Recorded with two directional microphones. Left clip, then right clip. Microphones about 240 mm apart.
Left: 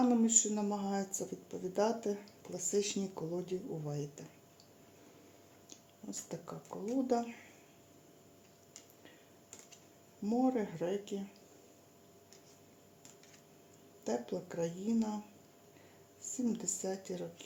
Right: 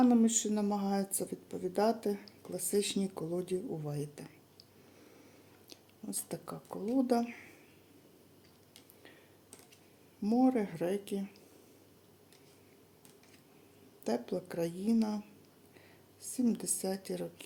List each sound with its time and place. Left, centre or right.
0.0 s speech: right
6.1 s speech: right
10.2 s speech: right
14.0 s speech: right
16.2 s speech: right